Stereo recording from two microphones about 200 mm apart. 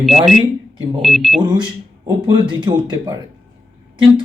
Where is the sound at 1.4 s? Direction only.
20° right (ahead or behind).